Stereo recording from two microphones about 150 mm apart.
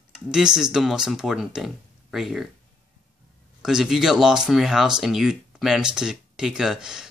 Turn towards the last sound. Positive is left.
turn(degrees=-5)  # may be behind; listen again after turning